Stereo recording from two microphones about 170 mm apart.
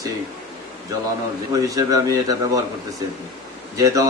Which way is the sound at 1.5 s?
20° right (ahead or behind).